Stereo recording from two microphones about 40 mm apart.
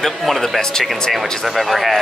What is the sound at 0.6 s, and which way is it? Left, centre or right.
Speech, centre.